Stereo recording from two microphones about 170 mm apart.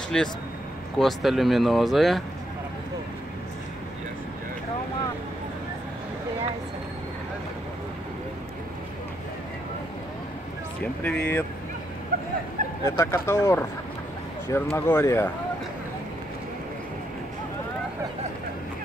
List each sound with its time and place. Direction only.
0.1 s speech: 5° left (ahead or behind)
10.8 s speech: 5° left (ahead or behind)
12.1 s a sound: 65° right (ahead or behind)
12.8 s speech: 15° left (ahead or behind)